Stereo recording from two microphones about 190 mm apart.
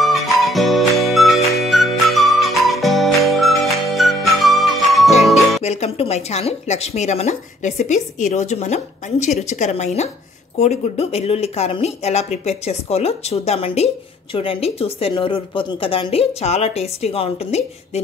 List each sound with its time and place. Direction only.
0.0 s music: centre (ahead or behind)
5.6 s a woman's voice: 35° left (ahead or behind)